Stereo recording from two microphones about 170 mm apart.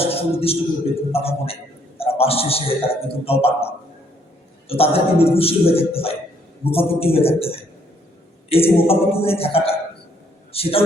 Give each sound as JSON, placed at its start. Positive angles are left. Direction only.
{"t": 0.0, "sound": "a sound", "side_deg": 35}
{"t": 1.1, "sound": "a man's voice", "side_deg": 35}
{"t": 4.7, "sound": "a man's voice", "side_deg": 35}